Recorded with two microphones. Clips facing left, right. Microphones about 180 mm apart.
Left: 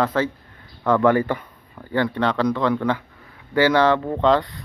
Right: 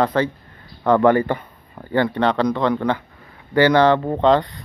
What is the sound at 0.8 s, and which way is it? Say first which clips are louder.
Speech: right 3 dB; 30° right (ahead or behind).